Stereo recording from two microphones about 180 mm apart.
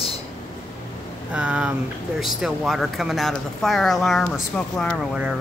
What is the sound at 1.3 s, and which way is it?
A woman's voice, 5° right (ahead or behind).